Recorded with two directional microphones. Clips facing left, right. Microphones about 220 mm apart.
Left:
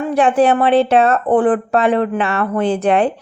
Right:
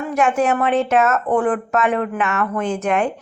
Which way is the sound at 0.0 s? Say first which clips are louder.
Left 5 dB; 30° left (ahead or behind).